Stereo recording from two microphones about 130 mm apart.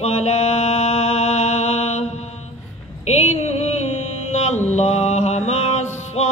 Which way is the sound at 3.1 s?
55° left (ahead or behind).